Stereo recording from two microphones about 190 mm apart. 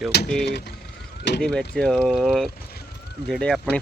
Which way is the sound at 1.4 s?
5° left (ahead or behind).